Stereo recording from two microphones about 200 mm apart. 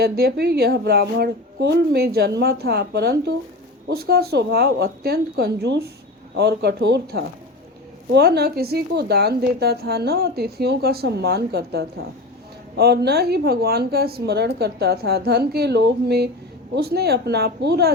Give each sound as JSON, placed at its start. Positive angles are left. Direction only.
{"t": 0.0, "sound": "a woman's voice", "side_deg": -50}